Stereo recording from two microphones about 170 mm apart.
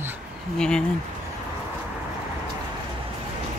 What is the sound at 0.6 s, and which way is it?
Speech, 5° left (ahead or behind).